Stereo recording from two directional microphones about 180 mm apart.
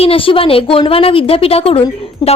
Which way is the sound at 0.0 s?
30° left (ahead or behind).